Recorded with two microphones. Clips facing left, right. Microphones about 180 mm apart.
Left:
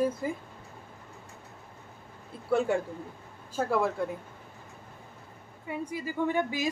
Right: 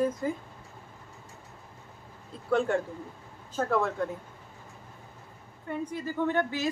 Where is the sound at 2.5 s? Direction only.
5° left (ahead or behind).